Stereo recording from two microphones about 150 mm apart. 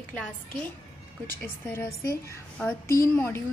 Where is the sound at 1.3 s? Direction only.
15° left (ahead or behind).